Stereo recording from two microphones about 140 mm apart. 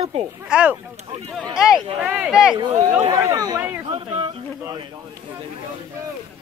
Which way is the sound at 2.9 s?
25° right (ahead or behind).